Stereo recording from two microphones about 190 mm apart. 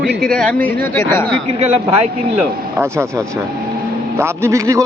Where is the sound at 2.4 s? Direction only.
10° right (ahead or behind).